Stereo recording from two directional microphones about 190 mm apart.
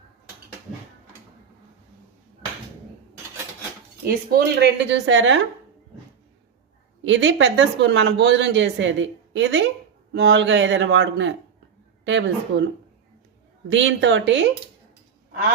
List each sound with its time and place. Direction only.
4.0 s speech: 55° right (ahead or behind); by 5.4 s 75° right (ahead or behind)
7.0 s speech: 75° right (ahead or behind)
13.7 s speech: 75° right (ahead or behind)